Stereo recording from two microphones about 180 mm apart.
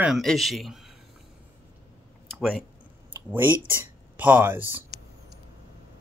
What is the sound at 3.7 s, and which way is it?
Speech, 10° right (ahead or behind).